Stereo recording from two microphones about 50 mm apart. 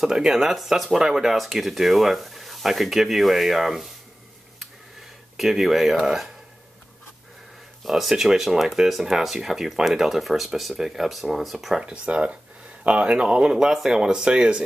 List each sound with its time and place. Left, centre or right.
0.0 s speech: centre
5.4 s speech: centre
7.8 s speech: centre
12.1 s speech: right